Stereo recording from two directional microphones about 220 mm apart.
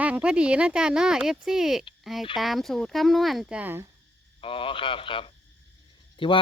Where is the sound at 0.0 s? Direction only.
5° right (ahead or behind).